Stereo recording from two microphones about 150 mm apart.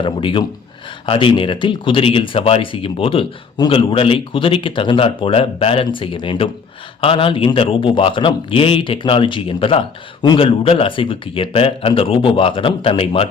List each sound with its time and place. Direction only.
0.0 s a man's voice: 35° left (ahead or behind)